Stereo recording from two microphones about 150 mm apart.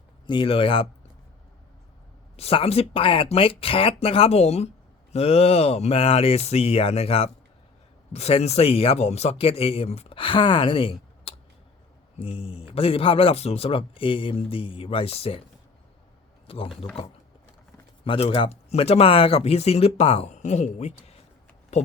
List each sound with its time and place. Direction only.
0.3 s speech: 35° left (ahead or behind)
2.3 s speech: 40° left (ahead or behind)
16.5 s speech: 40° left (ahead or behind)
18.0 s speech: 40° left (ahead or behind)